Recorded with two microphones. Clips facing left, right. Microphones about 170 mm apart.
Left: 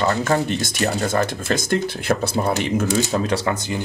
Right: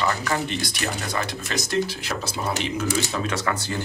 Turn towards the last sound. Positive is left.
turn(degrees=20)  # may be behind; listen again after turning